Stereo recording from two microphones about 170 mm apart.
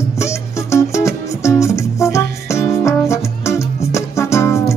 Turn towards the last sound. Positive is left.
turn(degrees=15)  # may be behind; listen again after turning